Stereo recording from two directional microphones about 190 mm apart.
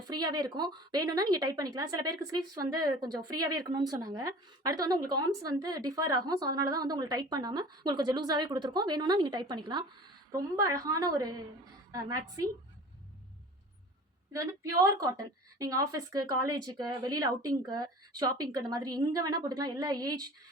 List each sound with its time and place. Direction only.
0.1 s a woman's voice: 20° right (ahead or behind)
14.3 s speech: 15° right (ahead or behind)